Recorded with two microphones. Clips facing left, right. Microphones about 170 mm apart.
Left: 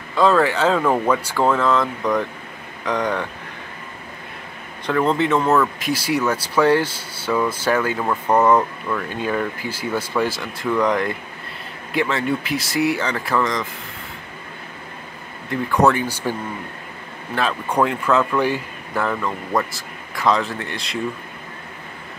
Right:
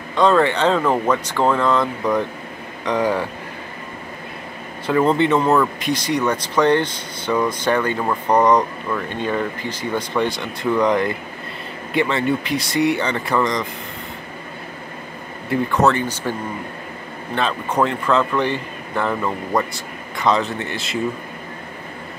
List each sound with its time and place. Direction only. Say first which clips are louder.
0.1 s speech: right 1 dB; 5° left (ahead or behind)
4.8 s speech: right 2 dB; 5° right (ahead or behind)
15.7 s speech: left 2 dB; 10° left (ahead or behind)
17.4 s speech: even; 5° left (ahead or behind)